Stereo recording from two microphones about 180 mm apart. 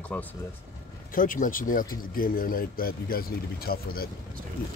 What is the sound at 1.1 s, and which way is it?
Speech, 50° left (ahead or behind).